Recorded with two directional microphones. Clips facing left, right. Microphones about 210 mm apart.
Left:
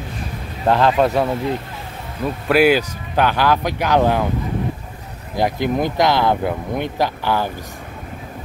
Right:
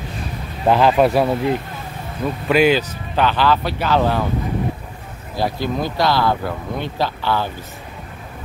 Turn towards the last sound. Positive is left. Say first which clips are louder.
# left 1 dB
turn(degrees=15)  # may be behind; listen again after turning